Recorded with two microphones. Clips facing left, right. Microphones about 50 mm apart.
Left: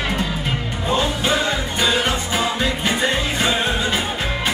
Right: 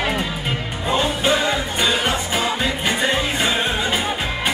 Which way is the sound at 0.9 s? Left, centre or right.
Centre.